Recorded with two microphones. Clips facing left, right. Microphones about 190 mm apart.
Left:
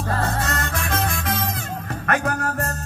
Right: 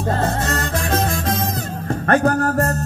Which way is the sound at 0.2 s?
30° right (ahead or behind).